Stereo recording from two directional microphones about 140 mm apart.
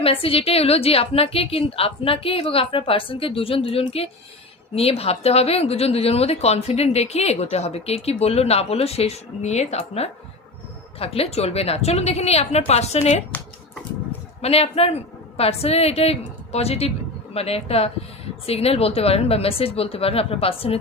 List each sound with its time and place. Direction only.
0.0 s a woman's voice: 40° left (ahead or behind)
14.4 s a woman's voice: 45° left (ahead or behind)